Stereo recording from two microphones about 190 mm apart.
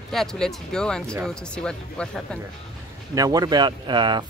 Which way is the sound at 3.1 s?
20° right (ahead or behind).